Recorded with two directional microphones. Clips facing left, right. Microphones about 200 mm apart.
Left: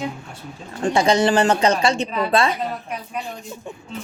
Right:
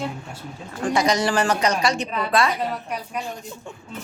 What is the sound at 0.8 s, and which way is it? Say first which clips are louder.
A woman's voice: left 3 dB; 25° left (ahead or behind).